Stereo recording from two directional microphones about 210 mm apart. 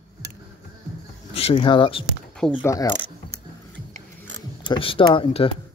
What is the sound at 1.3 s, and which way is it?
Speech, 25° left (ahead or behind).